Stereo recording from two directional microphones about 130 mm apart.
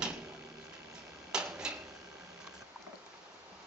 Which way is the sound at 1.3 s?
5° right (ahead or behind).